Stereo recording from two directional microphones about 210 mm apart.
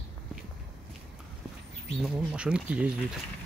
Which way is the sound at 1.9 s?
Centre (ahead or behind).